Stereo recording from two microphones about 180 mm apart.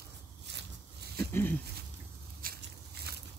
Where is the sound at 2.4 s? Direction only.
55° right (ahead or behind).